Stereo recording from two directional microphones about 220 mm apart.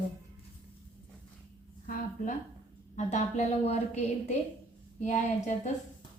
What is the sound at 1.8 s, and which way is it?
A woman's voice, 35° left (ahead or behind).